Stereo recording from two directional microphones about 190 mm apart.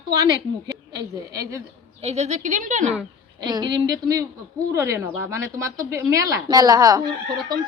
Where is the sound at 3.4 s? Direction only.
20° right (ahead or behind).